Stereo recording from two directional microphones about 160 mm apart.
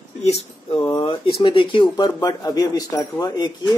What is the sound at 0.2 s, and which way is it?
Speech, 40° left (ahead or behind).